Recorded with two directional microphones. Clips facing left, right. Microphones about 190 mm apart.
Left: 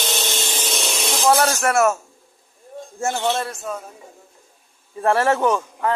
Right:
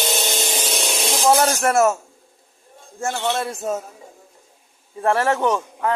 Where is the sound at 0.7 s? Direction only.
10° right (ahead or behind).